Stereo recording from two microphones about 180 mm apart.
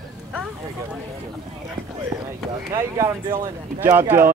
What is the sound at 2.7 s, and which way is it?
Speech, 20° right (ahead or behind).